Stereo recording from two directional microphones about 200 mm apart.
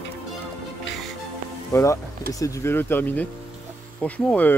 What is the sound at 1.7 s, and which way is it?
Speech, 15° left (ahead or behind).